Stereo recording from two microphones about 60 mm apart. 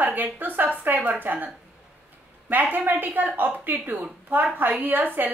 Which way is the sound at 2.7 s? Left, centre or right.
Right.